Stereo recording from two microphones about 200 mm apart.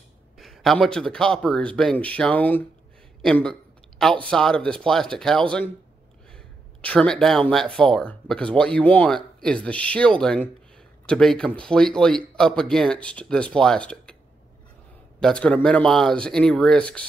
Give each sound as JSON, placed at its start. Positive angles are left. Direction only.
{"t": 0.4, "sound": "speech", "side_deg": 0}
{"t": 15.1, "sound": "speech", "side_deg": 5}